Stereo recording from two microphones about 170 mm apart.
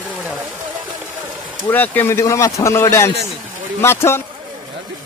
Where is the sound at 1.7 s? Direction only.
10° left (ahead or behind).